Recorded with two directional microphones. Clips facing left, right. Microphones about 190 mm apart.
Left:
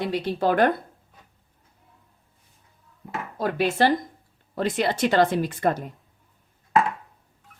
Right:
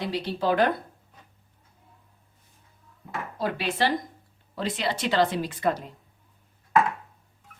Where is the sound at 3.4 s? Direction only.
50° left (ahead or behind).